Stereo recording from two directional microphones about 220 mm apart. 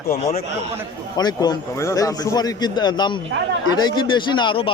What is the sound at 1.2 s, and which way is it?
A man's voice, 20° left (ahead or behind).